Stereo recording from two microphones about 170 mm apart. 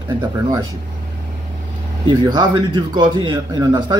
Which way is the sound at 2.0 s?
25° right (ahead or behind).